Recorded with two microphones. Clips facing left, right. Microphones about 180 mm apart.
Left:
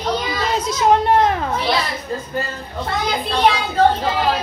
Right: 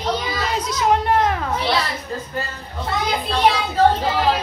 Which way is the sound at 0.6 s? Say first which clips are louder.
Left 4 dB; 25° left (ahead or behind).